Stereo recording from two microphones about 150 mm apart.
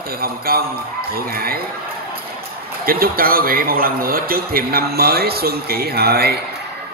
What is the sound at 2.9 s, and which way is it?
A man's voice, 80° right.